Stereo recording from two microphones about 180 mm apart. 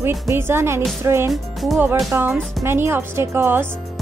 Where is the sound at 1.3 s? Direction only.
Centre (ahead or behind).